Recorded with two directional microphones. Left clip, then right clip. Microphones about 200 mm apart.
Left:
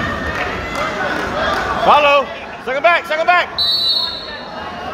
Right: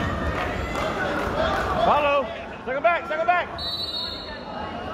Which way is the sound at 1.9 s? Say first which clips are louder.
Left 12 dB; 55° left (ahead or behind).